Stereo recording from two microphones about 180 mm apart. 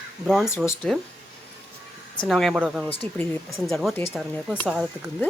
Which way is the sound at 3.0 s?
30° right (ahead or behind).